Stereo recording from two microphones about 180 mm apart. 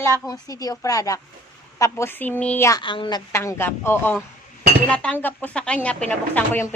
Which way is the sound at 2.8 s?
25° left (ahead or behind).